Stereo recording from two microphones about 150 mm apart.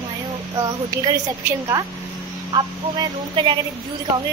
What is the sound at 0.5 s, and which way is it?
A woman's voice, 25° right (ahead or behind).